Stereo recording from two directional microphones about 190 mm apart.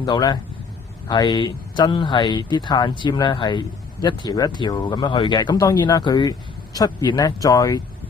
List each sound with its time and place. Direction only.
0.0 s speech: 20° left (ahead or behind)